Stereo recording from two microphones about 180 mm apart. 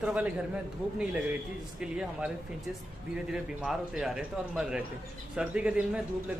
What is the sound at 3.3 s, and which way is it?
A man's voice, 5° right (ahead or behind).